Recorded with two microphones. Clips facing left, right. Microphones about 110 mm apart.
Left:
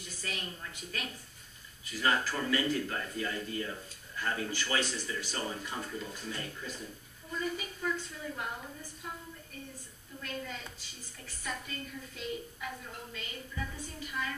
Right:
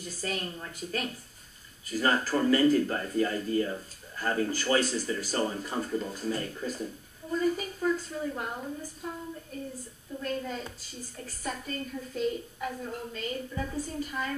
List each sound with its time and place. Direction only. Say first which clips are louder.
0.0 s a woman's voice: right 7 dB; 40° right (ahead or behind)
9.5 s a woman's voice: right 8 dB; 35° right (ahead or behind)